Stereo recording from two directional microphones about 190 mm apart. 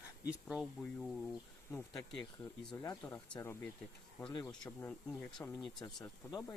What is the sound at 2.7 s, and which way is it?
Speech, 15° left (ahead or behind).